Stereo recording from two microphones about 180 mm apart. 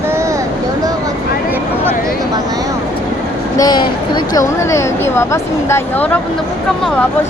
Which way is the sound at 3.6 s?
20° left (ahead or behind).